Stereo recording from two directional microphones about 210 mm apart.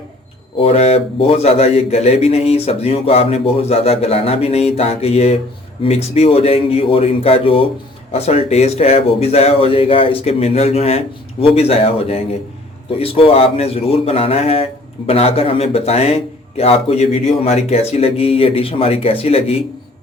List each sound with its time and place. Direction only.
0.6 s a man's voice: 30° left (ahead or behind)